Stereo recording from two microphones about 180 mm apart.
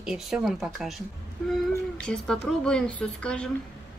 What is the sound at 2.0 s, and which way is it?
Speech, 5° left (ahead or behind).